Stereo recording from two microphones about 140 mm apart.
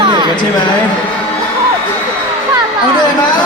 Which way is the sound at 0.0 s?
35° right (ahead or behind).